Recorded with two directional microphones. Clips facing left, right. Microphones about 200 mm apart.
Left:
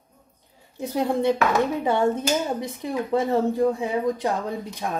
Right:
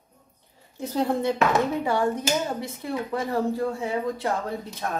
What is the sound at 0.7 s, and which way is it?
A woman's voice, 15° left (ahead or behind).